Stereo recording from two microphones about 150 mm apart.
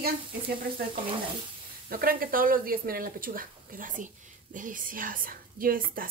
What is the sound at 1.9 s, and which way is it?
A woman's voice, 75° right (ahead or behind).